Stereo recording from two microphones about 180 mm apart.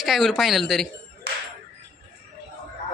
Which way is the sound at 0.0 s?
Centre (ahead or behind).